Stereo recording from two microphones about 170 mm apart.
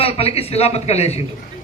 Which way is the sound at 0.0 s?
35° left (ahead or behind).